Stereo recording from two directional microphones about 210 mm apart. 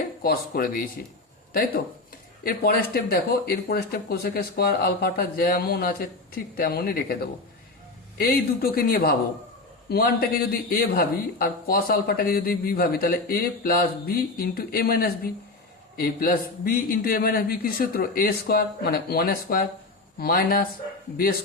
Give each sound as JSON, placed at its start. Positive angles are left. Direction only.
{"t": 0.2, "sound": "speech", "side_deg": 45}
{"t": 2.4, "sound": "speech", "side_deg": 45}